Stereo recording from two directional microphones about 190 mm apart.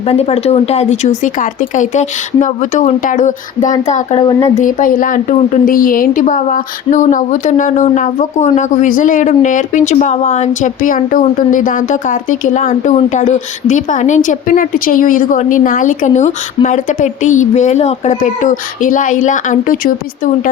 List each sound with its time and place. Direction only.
0.1 s a woman's voice: 35° left (ahead or behind)
4.2 s speech: 20° left (ahead or behind)
4.5 s a woman's voice: 45° left (ahead or behind)